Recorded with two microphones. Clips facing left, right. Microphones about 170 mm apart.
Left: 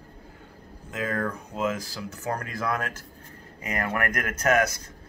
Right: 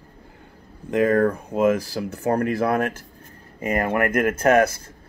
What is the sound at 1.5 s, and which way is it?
Speech, 55° right (ahead or behind).